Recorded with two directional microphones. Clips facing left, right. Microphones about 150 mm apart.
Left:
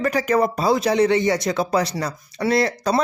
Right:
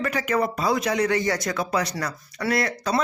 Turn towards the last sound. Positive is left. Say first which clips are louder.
# left 5 dB
turn(degrees=35)  # may be behind; listen again after turning